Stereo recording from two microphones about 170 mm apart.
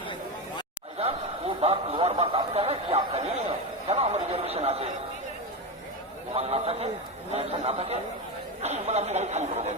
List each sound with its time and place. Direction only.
0.9 s a man's voice: 35° right (ahead or behind)
3.8 s a sound: 40° right (ahead or behind)
6.3 s a man's voice: 40° right (ahead or behind)